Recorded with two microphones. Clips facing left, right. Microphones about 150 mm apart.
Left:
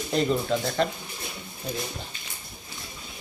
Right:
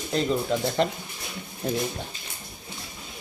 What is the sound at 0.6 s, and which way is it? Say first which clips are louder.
Speech: right 2 dB; 20° right (ahead or behind).